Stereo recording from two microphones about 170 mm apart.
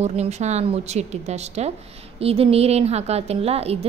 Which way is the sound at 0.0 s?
40° right (ahead or behind).